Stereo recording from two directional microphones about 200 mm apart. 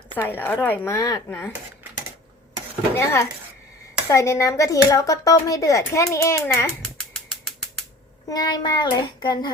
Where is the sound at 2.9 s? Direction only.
15° left (ahead or behind).